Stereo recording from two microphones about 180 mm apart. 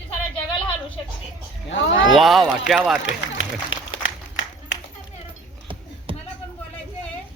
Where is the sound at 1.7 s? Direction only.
90° left.